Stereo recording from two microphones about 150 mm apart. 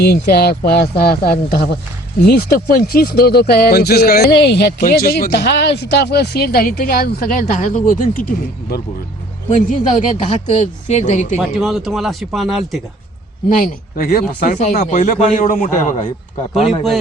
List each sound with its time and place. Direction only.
0.0 s speech: 90° left
7.5 s speech: 50° left (ahead or behind)
9.5 s speech: 50° left (ahead or behind)
11.3 s speech: centre (ahead or behind)
13.6 s speech: 65° left (ahead or behind)